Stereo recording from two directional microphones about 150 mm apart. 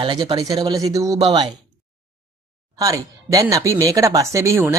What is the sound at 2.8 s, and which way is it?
Speech, 25° right (ahead or behind).